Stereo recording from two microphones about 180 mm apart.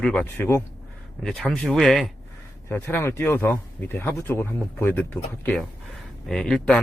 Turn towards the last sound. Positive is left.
turn(degrees=5)  # may be behind; listen again after turning